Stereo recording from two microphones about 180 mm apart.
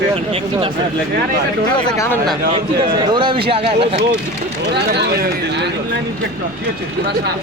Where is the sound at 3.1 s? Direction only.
25° right (ahead or behind).